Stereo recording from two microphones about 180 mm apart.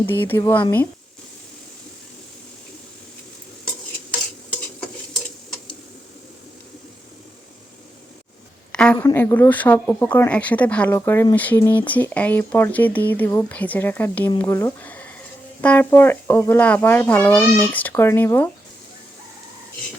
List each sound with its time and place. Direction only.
0.0 s speech: 10° left (ahead or behind)
8.7 s a sound: 5° left (ahead or behind)
9.0 s speech: 10° left (ahead or behind)